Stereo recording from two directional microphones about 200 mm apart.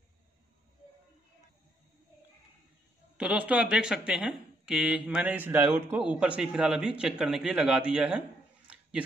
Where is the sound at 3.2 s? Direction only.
5° right (ahead or behind).